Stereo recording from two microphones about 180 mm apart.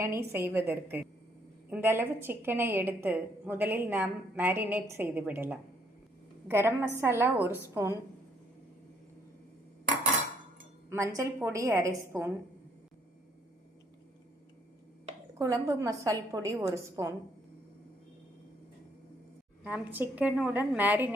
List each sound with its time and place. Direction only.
0.0 s a woman's voice: 15° right (ahead or behind)
10.8 s a woman's voice: 15° right (ahead or behind)
15.4 s a woman's voice: 15° right (ahead or behind)
19.6 s a woman's voice: 10° right (ahead or behind)